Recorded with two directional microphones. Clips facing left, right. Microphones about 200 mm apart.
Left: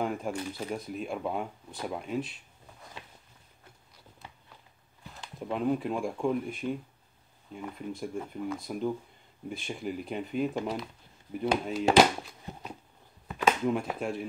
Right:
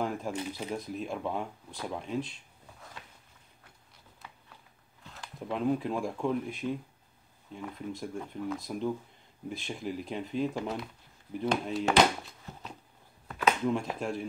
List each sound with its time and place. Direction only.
0.0 s shuffling cards: centre (ahead or behind)
0.3 s speech: 20° right (ahead or behind)
0.7 s speech: centre (ahead or behind)
5.1 s speech: centre (ahead or behind)
12.5 s a sound: 15° left (ahead or behind)
13.3 s speech: 5° left (ahead or behind)